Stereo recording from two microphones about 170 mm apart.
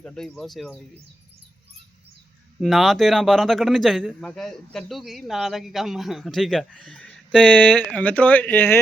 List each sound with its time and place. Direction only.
0.0 s speech: 5° left (ahead or behind)
2.6 s speech: centre (ahead or behind)